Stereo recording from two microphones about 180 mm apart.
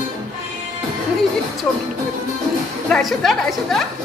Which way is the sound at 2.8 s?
Centre (ahead or behind).